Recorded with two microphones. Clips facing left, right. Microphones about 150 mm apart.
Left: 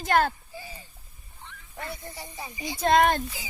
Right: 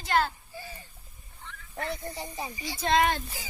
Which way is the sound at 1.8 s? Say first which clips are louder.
Right 4 dB; 20° right (ahead or behind).